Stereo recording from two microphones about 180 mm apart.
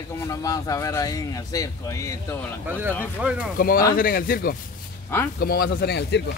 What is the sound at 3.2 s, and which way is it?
Speech, 5° right (ahead or behind).